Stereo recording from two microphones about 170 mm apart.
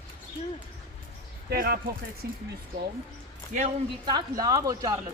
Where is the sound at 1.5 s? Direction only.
60° right (ahead or behind).